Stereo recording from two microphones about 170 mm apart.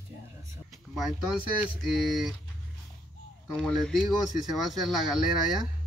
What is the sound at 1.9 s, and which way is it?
Speech, centre (ahead or behind).